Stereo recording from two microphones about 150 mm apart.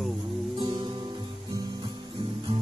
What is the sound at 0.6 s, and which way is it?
Music, 30° right (ahead or behind).